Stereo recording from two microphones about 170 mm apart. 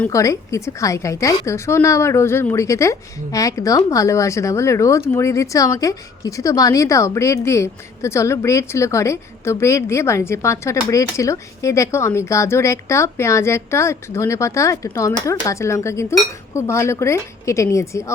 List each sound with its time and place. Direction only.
0.0 s a woman's voice: 20° left (ahead or behind)